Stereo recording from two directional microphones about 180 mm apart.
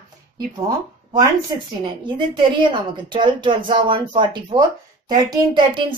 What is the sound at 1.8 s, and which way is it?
Speech, 25° right (ahead or behind).